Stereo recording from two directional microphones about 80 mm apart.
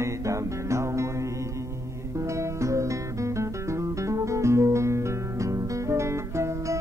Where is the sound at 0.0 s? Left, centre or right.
Right.